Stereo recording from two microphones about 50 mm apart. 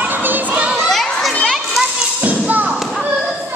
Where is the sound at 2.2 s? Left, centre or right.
Right.